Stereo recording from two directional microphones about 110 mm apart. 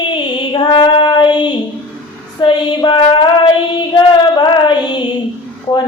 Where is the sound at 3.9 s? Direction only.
45° left (ahead or behind).